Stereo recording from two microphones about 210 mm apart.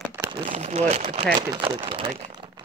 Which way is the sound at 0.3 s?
30° right (ahead or behind).